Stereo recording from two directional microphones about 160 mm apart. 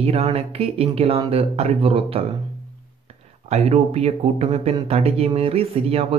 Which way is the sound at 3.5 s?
45° right (ahead or behind).